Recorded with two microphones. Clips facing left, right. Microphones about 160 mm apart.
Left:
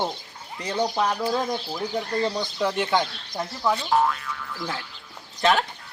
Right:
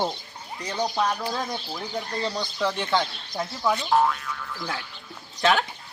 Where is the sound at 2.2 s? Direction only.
15° left (ahead or behind).